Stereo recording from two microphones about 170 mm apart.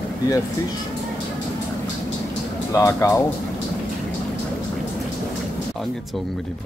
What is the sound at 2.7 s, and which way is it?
Speech, 20° left (ahead or behind).